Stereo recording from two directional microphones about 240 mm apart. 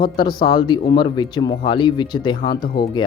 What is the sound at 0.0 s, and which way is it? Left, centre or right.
Speech, centre.